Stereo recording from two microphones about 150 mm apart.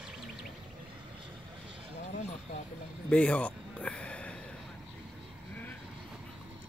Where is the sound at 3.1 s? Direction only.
5° left (ahead or behind).